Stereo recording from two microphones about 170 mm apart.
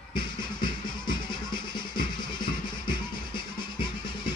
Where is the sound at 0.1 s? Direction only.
25° left (ahead or behind).